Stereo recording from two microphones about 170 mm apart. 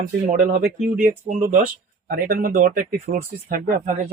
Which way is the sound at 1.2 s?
45° right (ahead or behind).